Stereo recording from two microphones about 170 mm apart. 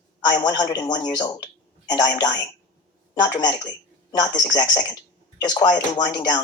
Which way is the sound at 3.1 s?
25° left (ahead or behind).